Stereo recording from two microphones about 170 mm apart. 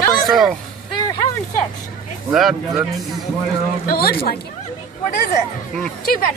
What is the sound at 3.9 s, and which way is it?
Speech, 65° left (ahead or behind).